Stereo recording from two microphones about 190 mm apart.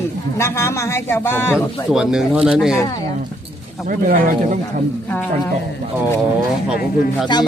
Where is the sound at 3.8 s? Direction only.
45° right (ahead or behind).